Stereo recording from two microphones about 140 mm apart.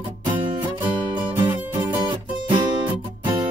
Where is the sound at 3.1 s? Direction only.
30° right (ahead or behind).